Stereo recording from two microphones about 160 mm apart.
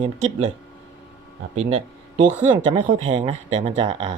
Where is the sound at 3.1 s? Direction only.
45° right (ahead or behind).